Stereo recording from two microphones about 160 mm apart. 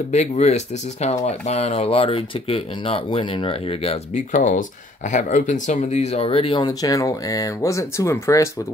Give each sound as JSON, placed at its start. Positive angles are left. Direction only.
{"t": 0.1, "sound": "speech", "side_deg": 45}